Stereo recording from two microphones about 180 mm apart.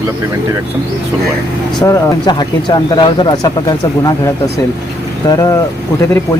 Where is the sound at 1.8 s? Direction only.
20° left (ahead or behind).